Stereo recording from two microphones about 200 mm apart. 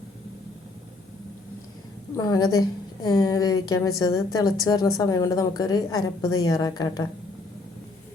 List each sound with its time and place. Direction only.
2.1 s a woman's voice: 20° left (ahead or behind)